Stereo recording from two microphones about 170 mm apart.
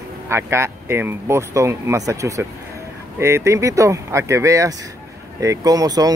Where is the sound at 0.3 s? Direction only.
15° right (ahead or behind).